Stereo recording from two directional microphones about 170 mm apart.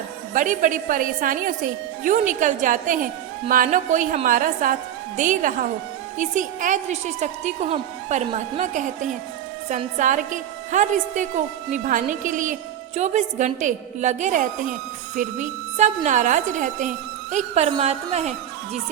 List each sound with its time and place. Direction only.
0.3 s a woman's voice: 50° right (ahead or behind)